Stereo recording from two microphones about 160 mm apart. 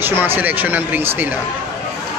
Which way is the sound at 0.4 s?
10° right (ahead or behind).